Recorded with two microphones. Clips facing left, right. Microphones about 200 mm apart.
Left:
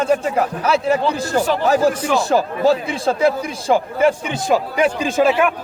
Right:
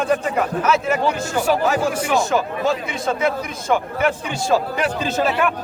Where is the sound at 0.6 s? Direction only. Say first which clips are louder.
Left 4 dB; 35° left (ahead or behind).